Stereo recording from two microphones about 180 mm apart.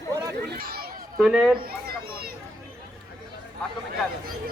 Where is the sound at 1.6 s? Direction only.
55° right (ahead or behind).